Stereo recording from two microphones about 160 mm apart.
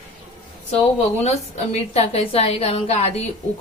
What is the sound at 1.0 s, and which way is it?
A woman's voice, 45° left (ahead or behind).